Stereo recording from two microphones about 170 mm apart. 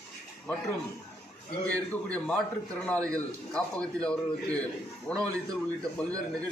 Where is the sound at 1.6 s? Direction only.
5° left (ahead or behind).